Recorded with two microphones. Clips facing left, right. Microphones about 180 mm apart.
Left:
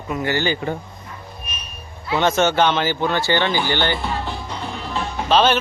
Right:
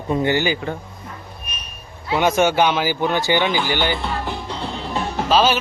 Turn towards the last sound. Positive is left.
turn(degrees=-5)  # may be behind; listen again after turning